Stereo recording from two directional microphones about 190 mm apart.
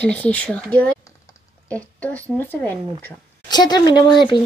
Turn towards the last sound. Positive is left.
turn(degrees=20)  # may be behind; listen again after turning